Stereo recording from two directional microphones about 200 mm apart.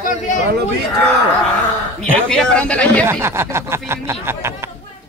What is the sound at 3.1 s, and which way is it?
Speech, 10° right (ahead or behind).